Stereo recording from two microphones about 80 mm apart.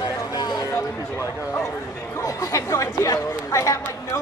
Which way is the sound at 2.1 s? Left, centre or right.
Left.